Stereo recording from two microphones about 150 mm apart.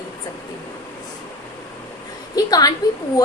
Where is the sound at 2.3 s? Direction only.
25° left (ahead or behind).